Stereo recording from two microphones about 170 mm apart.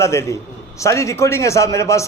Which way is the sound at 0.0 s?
15° left (ahead or behind).